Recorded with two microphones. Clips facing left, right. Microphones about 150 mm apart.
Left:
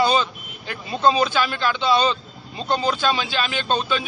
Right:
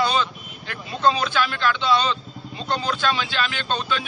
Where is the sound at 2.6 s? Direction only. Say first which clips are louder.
Left 3 dB; 10° left (ahead or behind).